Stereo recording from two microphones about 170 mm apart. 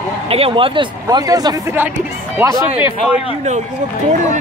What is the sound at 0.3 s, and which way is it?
Speech, 35° right (ahead or behind).